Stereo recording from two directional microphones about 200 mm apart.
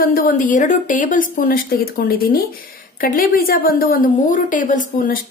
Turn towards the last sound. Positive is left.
turn(degrees=40)  # may be behind; listen again after turning